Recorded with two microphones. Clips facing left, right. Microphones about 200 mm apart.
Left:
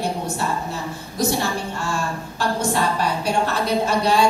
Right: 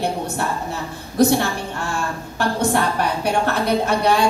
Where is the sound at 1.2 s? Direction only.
60° right (ahead or behind).